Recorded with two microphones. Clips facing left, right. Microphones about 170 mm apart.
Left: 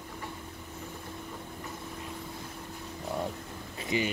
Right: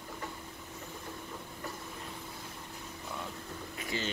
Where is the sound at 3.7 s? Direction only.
20° left (ahead or behind).